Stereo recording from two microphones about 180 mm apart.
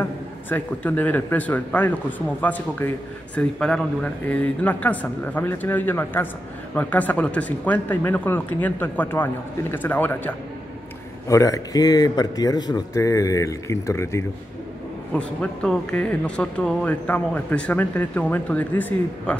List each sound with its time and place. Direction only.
0.0 s speech: 10° left (ahead or behind)